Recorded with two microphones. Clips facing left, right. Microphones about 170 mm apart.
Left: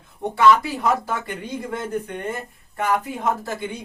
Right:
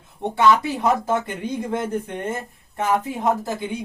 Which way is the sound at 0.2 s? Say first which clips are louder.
Left 1 dB; 20° right (ahead or behind).